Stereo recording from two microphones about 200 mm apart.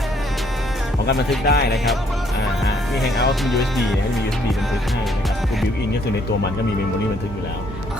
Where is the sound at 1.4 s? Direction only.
55° left (ahead or behind).